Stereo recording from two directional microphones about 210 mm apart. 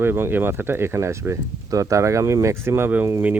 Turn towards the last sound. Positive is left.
turn(degrees=-10)  # may be behind; listen again after turning